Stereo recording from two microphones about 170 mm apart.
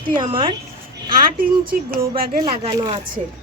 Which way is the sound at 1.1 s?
55° right (ahead or behind).